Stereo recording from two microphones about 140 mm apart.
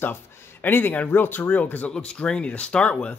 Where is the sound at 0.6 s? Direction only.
15° left (ahead or behind).